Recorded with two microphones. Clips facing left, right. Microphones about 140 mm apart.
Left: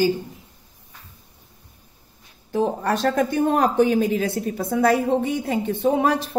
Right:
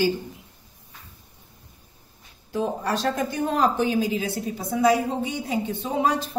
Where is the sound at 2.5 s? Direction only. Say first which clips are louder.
Left 4 dB; 60° left (ahead or behind).